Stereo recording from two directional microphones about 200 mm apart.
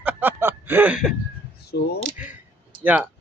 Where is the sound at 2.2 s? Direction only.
5° right (ahead or behind).